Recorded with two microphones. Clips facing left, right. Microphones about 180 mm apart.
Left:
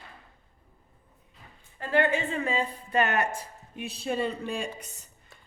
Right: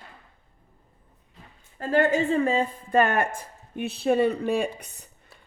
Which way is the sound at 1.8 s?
40° right (ahead or behind).